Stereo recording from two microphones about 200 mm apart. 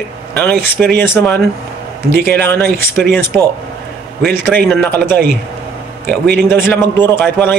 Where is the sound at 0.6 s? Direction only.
10° left (ahead or behind).